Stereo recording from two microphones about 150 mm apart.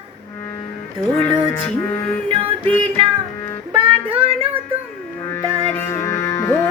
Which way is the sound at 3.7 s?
35° right (ahead or behind).